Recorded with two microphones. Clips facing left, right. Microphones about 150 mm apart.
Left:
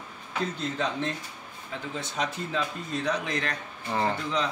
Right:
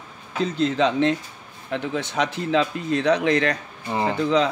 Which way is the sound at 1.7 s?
70° right (ahead or behind).